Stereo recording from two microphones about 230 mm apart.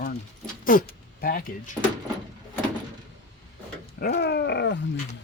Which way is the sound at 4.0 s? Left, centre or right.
Left.